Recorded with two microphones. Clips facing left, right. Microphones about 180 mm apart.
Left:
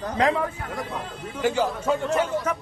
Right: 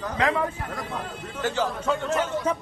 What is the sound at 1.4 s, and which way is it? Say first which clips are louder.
Speech: left 3 dB; 10° left (ahead or behind).